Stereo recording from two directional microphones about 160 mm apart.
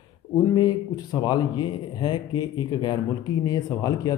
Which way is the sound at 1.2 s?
25° left (ahead or behind).